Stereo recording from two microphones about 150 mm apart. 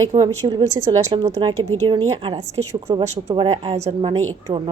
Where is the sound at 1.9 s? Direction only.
35° right (ahead or behind).